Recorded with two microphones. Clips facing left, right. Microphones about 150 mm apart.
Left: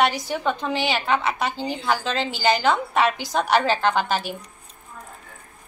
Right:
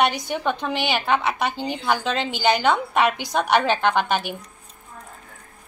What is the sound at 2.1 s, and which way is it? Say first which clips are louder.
Speech: even; 60° right (ahead or behind).